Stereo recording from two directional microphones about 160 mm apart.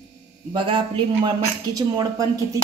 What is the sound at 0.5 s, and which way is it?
Speech, 30° right (ahead or behind).